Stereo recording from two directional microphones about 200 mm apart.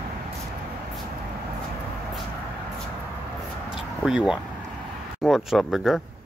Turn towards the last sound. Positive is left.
turn(degrees=0)  # may be behind; listen again after turning